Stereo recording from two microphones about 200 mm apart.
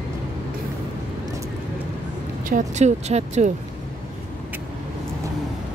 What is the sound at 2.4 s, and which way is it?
Speech, 40° right (ahead or behind).